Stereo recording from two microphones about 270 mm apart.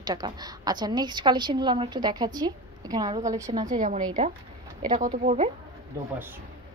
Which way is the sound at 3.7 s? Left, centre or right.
Right.